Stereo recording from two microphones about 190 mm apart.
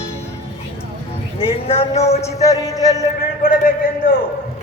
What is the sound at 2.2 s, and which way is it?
Speech, 20° left (ahead or behind).